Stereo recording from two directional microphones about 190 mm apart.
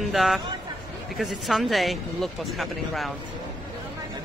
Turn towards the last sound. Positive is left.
turn(degrees=0)  # may be behind; listen again after turning